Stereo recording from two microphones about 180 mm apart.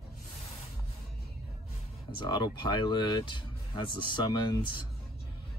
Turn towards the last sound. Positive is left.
turn(degrees=25)  # may be behind; listen again after turning